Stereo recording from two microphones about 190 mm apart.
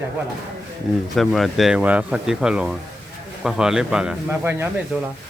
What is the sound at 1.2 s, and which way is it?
Speech, centre (ahead or behind).